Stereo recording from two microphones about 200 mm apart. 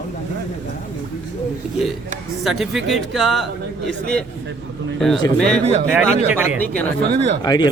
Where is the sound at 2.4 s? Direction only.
Centre (ahead or behind).